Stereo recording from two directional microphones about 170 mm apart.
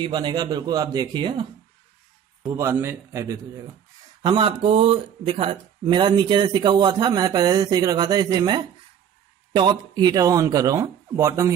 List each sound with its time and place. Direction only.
0.0 s speech: 25° right (ahead or behind)
2.4 s a man's voice: 15° right (ahead or behind)
4.2 s speech: 30° right (ahead or behind)